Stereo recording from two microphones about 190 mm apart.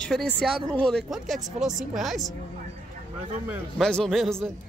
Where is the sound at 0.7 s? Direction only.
5° left (ahead or behind).